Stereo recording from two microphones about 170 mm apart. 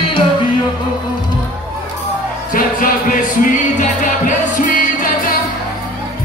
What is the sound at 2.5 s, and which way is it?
Music, 55° left (ahead or behind).